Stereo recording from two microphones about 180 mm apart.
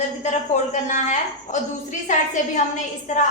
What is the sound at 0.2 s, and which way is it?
A man's voice, 40° left (ahead or behind).